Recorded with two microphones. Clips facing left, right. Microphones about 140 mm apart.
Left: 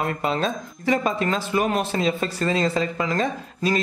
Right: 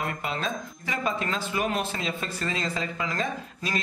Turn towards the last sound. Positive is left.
turn(degrees=35)  # may be behind; listen again after turning